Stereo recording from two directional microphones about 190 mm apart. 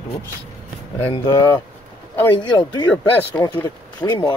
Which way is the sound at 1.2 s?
20° left (ahead or behind).